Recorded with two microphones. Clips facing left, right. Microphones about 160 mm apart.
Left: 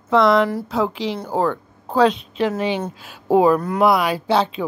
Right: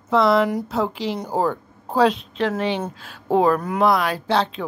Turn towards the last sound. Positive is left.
turn(degrees=5)  # may be behind; listen again after turning